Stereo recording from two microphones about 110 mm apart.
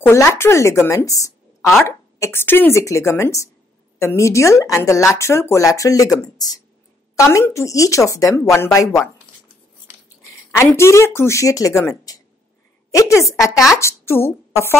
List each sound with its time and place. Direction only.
0.0 s a woman's voice: 25° left (ahead or behind)
10.7 s speech: 25° left (ahead or behind)
11.9 s a sound: 35° left (ahead or behind)
12.9 s a woman's voice: 30° left (ahead or behind)
13.2 s speech: centre (ahead or behind)
13.7 s a woman's voice: 25° left (ahead or behind)